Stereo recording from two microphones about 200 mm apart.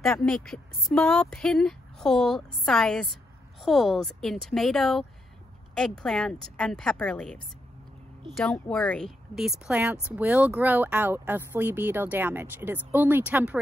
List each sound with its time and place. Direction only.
0.0 s speech: 5° left (ahead or behind)